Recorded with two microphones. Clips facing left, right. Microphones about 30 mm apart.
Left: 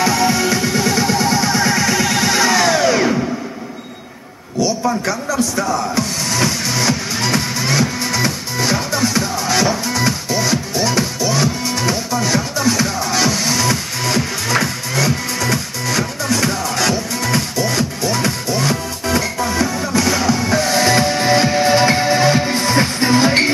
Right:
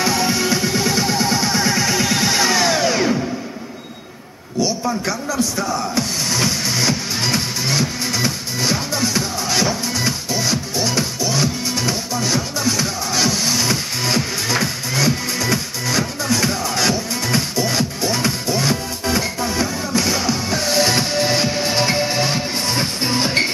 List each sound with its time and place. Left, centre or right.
0.0 s music: centre
5.0 s music: centre
20.3 s music: left
21.1 s music: left
22.6 s music: left